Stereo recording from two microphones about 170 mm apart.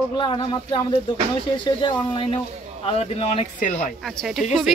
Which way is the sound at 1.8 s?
30° left (ahead or behind).